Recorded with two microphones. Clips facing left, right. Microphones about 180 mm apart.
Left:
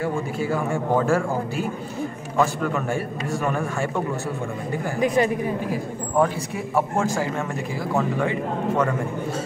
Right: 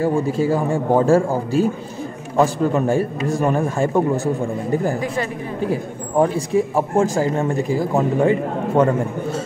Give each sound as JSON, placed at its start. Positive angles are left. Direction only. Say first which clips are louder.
{"t": 0.0, "sound": "a man's voice", "louder": "right 7 dB", "side_deg": -35}
{"t": 5.0, "sound": "a woman's voice", "louder": "left 4 dB", "side_deg": 15}
{"t": 6.1, "sound": "a man's voice", "louder": "right 6 dB", "side_deg": -35}